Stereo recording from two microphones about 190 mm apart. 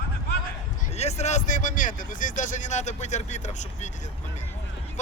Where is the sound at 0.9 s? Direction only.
35° left (ahead or behind).